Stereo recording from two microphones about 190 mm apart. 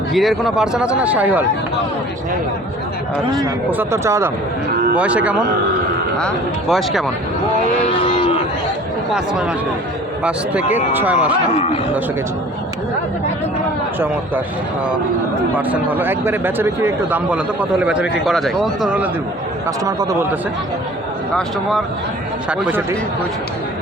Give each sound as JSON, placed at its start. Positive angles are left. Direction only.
{"t": 0.1, "sound": "a man's voice", "side_deg": 0}
{"t": 3.7, "sound": "a man's voice", "side_deg": -10}
{"t": 7.9, "sound": "speech", "side_deg": 30}
{"t": 10.9, "sound": "speech", "side_deg": -10}
{"t": 11.5, "sound": "speech", "side_deg": 35}
{"t": 15.5, "sound": "a man's voice", "side_deg": -10}
{"t": 19.8, "sound": "speech", "side_deg": -20}
{"t": 21.3, "sound": "a man's voice", "side_deg": 0}